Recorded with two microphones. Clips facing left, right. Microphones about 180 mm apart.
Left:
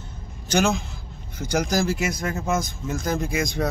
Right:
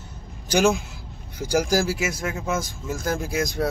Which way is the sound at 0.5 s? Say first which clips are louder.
Right 2 dB; 10° right (ahead or behind).